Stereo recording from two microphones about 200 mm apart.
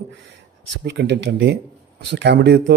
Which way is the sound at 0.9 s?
60° right (ahead or behind).